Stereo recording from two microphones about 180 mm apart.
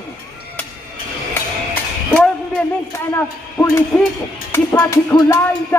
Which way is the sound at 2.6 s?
10° left (ahead or behind).